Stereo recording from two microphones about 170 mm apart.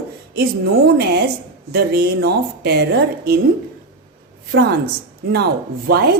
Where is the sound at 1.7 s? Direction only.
70° right (ahead or behind).